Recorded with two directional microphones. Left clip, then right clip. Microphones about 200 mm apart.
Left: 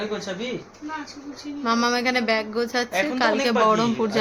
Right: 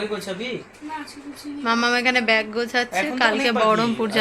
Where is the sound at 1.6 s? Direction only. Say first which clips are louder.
Right 2 dB; 5° left (ahead or behind).